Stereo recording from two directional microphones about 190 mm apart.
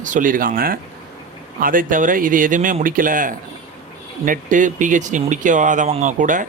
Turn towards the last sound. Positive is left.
turn(degrees=-40)  # may be behind; listen again after turning